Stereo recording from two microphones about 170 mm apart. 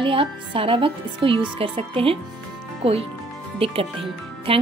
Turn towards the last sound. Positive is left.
turn(degrees=-35)  # may be behind; listen again after turning